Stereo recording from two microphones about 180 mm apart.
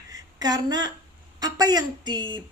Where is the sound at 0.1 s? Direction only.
20° right (ahead or behind).